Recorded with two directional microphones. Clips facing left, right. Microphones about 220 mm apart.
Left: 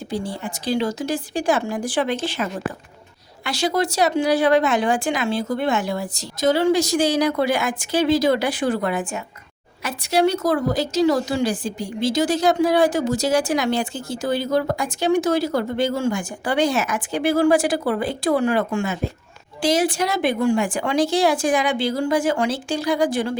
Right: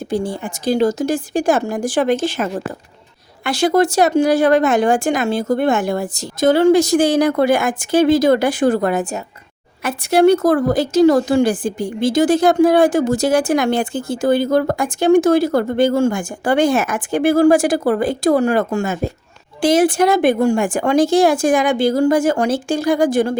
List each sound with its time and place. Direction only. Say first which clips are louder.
0.1 s speech: right 6 dB; 45° right (ahead or behind)
9.8 s speech: right 7 dB; 55° right (ahead or behind)